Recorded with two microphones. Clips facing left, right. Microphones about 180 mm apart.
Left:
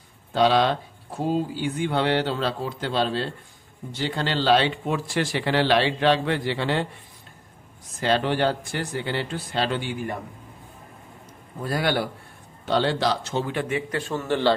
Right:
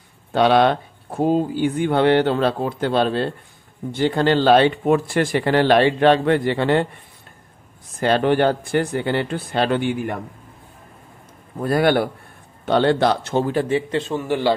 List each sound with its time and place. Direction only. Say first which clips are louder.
0.3 s speech: right 4 dB; 60° right (ahead or behind)
8.0 s speech: right 5 dB; 50° right (ahead or behind)
11.6 s a man's voice: right 7 dB; 55° right (ahead or behind); by 14.5 s 10° right (ahead or behind)